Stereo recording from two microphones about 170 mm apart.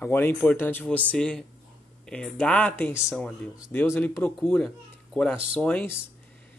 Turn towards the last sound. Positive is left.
turn(degrees=10)  # may be behind; listen again after turning